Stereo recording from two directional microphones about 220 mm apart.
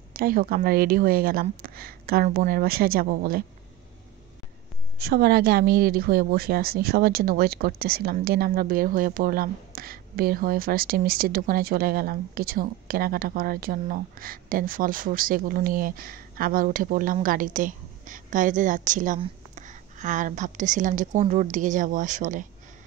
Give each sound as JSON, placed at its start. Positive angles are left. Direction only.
{"t": 0.1, "sound": "speech", "side_deg": -40}
{"t": 4.9, "sound": "speech", "side_deg": -45}